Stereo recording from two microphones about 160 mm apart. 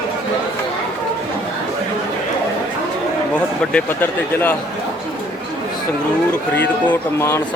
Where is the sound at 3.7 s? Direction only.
10° left (ahead or behind).